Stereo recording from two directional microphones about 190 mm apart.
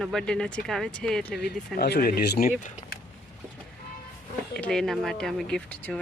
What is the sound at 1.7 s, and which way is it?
Speech, 55° left (ahead or behind).